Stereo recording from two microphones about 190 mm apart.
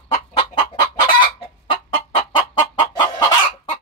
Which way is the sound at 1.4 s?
30° left (ahead or behind).